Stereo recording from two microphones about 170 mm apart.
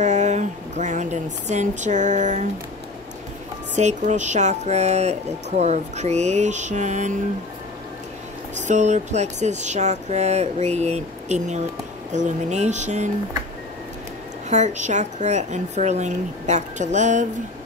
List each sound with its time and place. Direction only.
0.0 s a sound: 45° right (ahead or behind)
1.5 s speech: 45° right (ahead or behind)
3.7 s speech: 45° right (ahead or behind)
8.6 s speech: 45° right (ahead or behind)
14.5 s speech: 45° right (ahead or behind)